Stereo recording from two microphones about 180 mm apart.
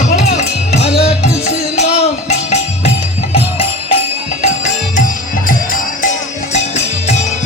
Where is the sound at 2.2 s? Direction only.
35° left (ahead or behind).